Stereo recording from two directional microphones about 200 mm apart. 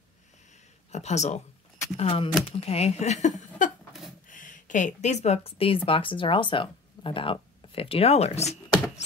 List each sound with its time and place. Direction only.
0.9 s speech: 35° left (ahead or behind)